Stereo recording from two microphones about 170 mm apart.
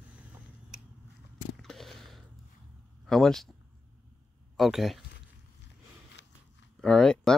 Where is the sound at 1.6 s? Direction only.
Centre (ahead or behind).